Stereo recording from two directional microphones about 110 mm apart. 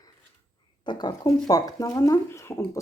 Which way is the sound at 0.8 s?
45° left (ahead or behind).